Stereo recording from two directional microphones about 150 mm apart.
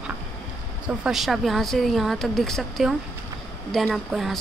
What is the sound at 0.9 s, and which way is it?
A woman's voice, 5° right (ahead or behind).